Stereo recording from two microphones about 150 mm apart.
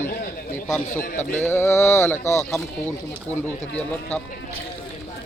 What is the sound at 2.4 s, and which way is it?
Speech, 5° left (ahead or behind).